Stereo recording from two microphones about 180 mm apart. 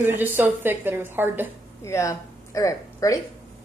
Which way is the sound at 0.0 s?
10° right (ahead or behind).